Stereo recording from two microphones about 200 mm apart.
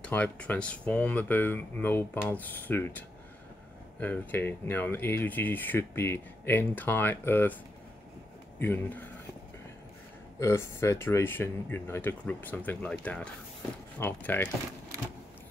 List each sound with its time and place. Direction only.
0.0 s speech: 5° left (ahead or behind)
8.5 s speech: 10° left (ahead or behind)
10.4 s speech: 10° left (ahead or behind)